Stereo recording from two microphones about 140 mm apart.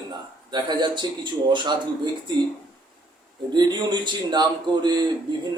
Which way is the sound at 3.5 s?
30° right (ahead or behind).